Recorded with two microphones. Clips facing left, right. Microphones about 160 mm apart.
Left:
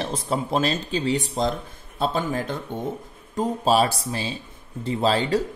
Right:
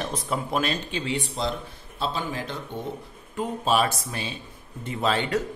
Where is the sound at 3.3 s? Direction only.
35° left (ahead or behind).